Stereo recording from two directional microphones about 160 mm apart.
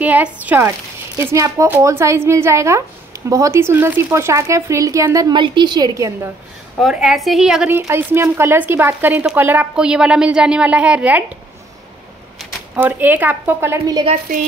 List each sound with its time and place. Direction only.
0.0 s speech: 10° right (ahead or behind)
6.8 s speech: centre (ahead or behind)
12.7 s speech: 10° right (ahead or behind)
14.3 s a sound: 65° right (ahead or behind)